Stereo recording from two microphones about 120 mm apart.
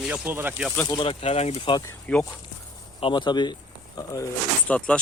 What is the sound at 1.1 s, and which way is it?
Speech, 60° left (ahead or behind).